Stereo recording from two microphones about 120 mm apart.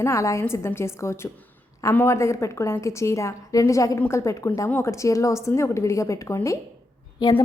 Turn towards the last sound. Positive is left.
turn(degrees=35)  # may be behind; listen again after turning